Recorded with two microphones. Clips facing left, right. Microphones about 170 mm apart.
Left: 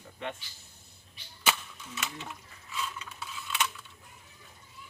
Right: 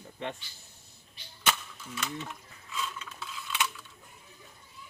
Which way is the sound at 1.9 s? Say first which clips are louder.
Right 3 dB; 5° left (ahead or behind).